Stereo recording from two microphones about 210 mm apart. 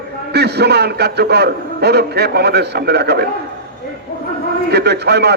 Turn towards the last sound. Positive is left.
turn(degrees=-50)  # may be behind; listen again after turning